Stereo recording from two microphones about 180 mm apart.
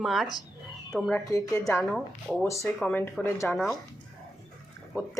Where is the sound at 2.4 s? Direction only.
15° left (ahead or behind).